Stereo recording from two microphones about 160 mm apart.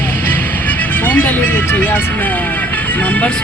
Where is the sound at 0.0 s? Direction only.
10° left (ahead or behind).